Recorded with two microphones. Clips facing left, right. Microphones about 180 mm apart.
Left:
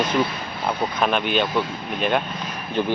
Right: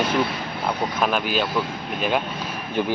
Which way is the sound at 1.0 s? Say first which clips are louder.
Left 2 dB; 5° right (ahead or behind).